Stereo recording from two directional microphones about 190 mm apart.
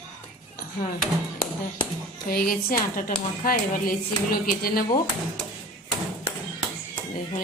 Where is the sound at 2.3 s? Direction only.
50° left (ahead or behind).